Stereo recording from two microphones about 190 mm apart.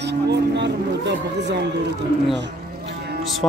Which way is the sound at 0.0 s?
65° right (ahead or behind).